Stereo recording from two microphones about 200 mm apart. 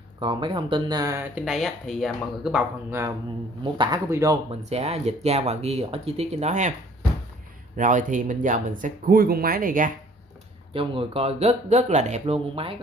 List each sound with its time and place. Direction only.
0.2 s speech: 25° right (ahead or behind)
1.3 s speech: centre (ahead or behind)
3.6 s speech: 25° right (ahead or behind)
4.6 s speech: 30° right (ahead or behind)
7.7 s speech: 40° right (ahead or behind)
10.7 s speech: 25° right (ahead or behind)